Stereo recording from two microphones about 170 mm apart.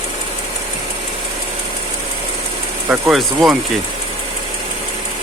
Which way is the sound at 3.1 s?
Centre (ahead or behind).